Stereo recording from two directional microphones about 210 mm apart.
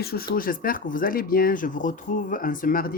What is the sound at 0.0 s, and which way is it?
Speech, 45° left (ahead or behind).